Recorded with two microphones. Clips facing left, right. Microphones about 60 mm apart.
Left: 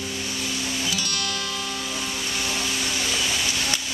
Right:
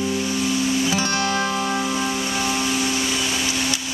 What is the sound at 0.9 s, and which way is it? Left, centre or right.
Music, right.